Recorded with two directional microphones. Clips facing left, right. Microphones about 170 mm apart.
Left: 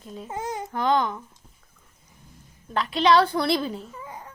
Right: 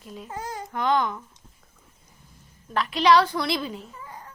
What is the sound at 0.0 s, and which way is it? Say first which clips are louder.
Speech: left 3 dB; 25° left (ahead or behind).